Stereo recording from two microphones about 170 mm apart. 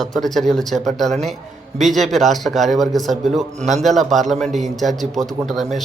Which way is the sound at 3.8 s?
Centre (ahead or behind).